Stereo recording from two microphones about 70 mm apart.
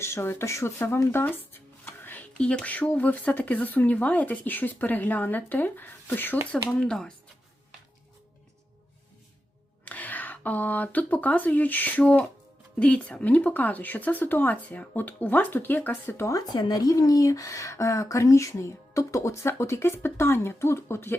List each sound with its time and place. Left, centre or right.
0.0 s speech: left
2.4 s speech: centre
6.7 s speech: centre
9.8 s speech: left
16.5 s speech: left